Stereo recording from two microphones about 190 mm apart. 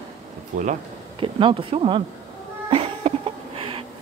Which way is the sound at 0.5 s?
40° right (ahead or behind).